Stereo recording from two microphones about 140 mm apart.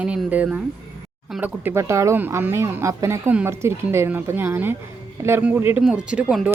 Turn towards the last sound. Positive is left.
turn(degrees=-10)  # may be behind; listen again after turning